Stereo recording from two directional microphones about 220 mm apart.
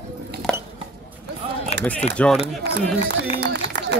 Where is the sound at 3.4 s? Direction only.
50° right (ahead or behind).